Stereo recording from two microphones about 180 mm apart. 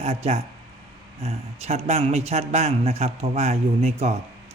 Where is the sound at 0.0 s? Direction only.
35° right (ahead or behind).